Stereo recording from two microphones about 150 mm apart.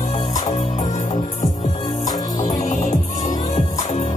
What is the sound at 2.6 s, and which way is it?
Music, 50° left (ahead or behind).